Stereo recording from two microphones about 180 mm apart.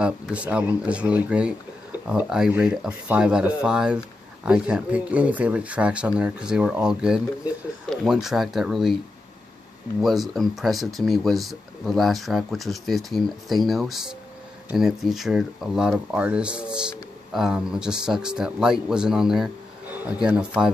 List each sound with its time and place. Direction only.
0.0 s speech: 5° right (ahead or behind)
10.0 s speech: centre (ahead or behind)